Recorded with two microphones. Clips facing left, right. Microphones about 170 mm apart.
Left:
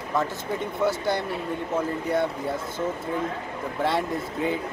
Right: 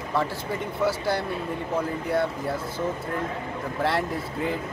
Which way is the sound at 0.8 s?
5° right (ahead or behind).